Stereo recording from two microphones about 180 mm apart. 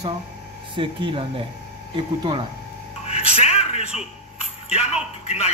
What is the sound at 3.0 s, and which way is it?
Music, 35° left (ahead or behind).